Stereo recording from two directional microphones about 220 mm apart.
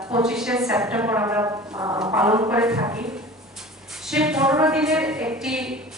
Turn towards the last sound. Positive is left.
turn(degrees=-5)  # may be behind; listen again after turning